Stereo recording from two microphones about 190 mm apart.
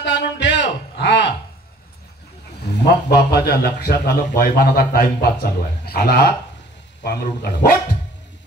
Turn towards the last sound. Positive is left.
turn(degrees=55)  # may be behind; listen again after turning